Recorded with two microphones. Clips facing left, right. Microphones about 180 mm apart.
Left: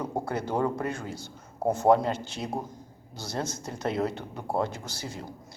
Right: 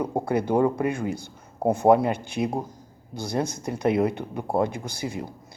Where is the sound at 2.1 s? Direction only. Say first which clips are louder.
Right 4 dB; 55° right (ahead or behind).